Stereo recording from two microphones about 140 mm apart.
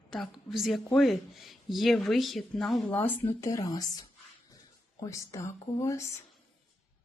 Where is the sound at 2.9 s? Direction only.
15° left (ahead or behind).